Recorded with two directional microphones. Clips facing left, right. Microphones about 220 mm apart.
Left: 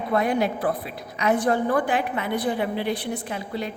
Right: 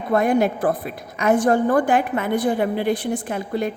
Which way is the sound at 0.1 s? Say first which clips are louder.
Right 5 dB; 50° right (ahead or behind).